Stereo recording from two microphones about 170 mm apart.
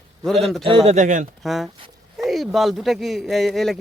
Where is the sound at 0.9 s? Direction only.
45° right (ahead or behind).